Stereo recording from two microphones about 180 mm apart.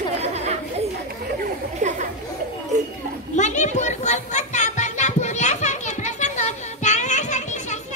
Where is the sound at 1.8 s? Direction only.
45° right (ahead or behind).